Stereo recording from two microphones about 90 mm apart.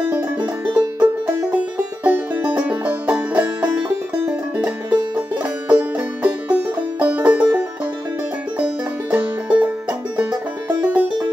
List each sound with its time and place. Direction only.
0.7 s music: 20° right (ahead or behind)
9.1 s music: 20° right (ahead or behind)